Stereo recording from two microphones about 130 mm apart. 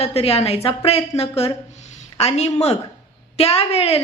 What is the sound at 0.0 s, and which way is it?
A woman's voice, 50° left (ahead or behind).